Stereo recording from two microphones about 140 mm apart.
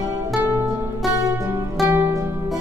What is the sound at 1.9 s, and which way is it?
Music, 15° right (ahead or behind).